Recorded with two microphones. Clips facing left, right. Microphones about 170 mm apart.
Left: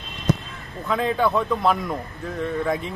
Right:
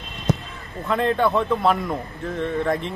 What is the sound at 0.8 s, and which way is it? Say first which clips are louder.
Speech: right 1 dB; centre (ahead or behind).